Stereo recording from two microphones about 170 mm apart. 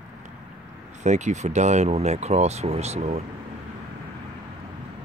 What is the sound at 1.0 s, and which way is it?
Speech, 45° right (ahead or behind).